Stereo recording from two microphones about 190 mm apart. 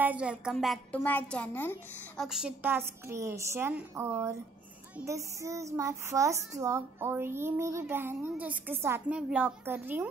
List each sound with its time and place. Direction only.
0.0 s a woman's voice: 5° right (ahead or behind); by 2.2 s 10° left (ahead or behind)
2.2 s a woman's voice: 5° right (ahead or behind)